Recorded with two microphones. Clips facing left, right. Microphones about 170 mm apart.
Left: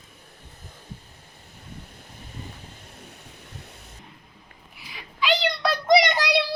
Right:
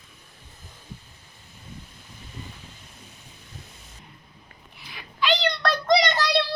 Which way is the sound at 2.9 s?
65° left (ahead or behind).